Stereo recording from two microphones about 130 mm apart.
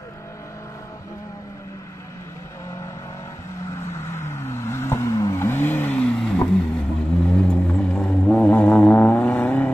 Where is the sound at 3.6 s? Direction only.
20° left (ahead or behind).